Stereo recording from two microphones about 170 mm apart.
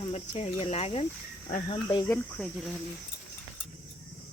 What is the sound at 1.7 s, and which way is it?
Speech, 25° left (ahead or behind).